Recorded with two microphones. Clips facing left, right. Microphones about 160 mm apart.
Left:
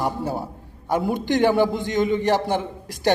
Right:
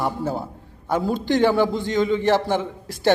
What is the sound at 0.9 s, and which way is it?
A man's voice, 20° left (ahead or behind).